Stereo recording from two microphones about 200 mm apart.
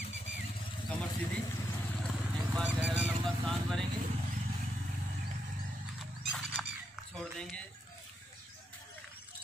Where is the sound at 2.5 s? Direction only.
5° right (ahead or behind).